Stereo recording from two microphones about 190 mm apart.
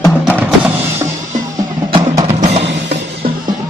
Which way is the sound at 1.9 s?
20° right (ahead or behind).